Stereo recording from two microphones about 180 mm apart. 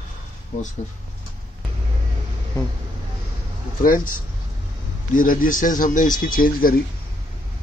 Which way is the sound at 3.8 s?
50° left (ahead or behind).